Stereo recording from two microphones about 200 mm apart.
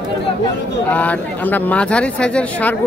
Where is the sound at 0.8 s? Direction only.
5° left (ahead or behind).